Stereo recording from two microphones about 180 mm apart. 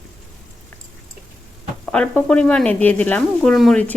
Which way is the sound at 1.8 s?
5° left (ahead or behind).